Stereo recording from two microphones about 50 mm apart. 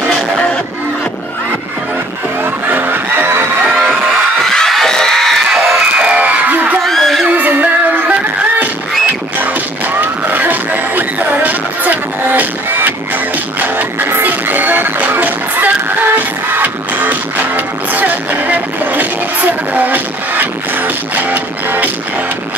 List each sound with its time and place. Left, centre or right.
2.7 s music: right
4.5 s a sound: centre
5.9 s music: right
6.8 s a sound: centre
7.2 s music: right
9.9 s music: right